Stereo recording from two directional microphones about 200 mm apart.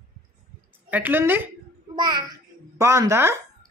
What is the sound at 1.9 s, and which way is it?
Child singing, 20° right (ahead or behind).